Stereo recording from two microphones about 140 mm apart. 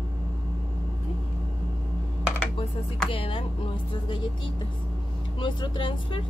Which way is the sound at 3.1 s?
40° left (ahead or behind).